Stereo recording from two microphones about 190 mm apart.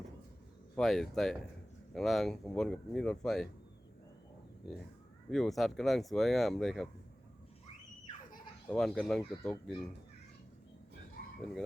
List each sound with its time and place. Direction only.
0.8 s speech: centre (ahead or behind)
4.7 s speech: centre (ahead or behind)
8.7 s speech: 5° left (ahead or behind)
11.2 s a sound: 55° left (ahead or behind)